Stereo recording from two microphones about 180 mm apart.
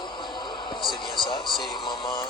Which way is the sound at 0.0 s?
25° left (ahead or behind).